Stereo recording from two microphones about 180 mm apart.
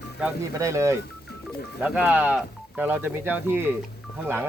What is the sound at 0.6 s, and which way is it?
Speech, 15° right (ahead or behind).